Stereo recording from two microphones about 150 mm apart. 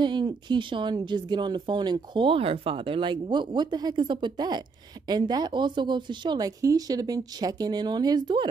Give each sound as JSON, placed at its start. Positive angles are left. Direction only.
{"t": 0.0, "sound": "speech", "side_deg": -30}